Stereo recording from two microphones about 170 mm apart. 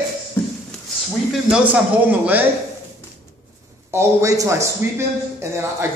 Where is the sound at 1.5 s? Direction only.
10° right (ahead or behind).